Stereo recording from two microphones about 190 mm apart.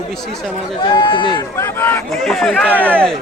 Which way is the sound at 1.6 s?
10° left (ahead or behind).